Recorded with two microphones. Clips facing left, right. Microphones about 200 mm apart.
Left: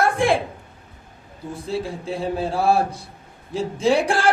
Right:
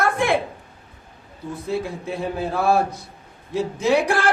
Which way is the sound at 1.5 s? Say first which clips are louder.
Right 1 dB; 30° left (ahead or behind).